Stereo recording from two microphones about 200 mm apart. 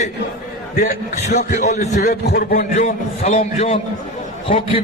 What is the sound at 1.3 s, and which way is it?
A man's voice, 35° left (ahead or behind).